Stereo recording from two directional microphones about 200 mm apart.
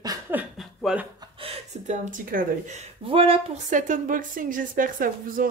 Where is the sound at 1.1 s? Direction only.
25° right (ahead or behind); by 5.4 s 45° right (ahead or behind).